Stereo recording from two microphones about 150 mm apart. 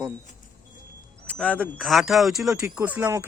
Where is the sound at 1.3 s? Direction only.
10° left (ahead or behind).